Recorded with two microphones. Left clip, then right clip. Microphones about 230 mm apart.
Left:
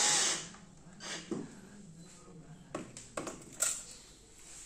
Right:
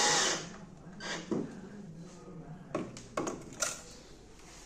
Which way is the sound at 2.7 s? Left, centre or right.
Centre.